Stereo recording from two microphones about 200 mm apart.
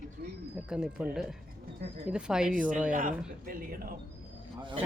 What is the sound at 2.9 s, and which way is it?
Speech, 40° right (ahead or behind).